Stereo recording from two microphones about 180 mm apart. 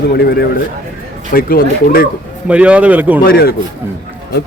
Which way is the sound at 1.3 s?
55° left (ahead or behind).